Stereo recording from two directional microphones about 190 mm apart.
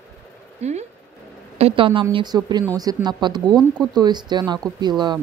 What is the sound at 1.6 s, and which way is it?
Speech, 25° right (ahead or behind).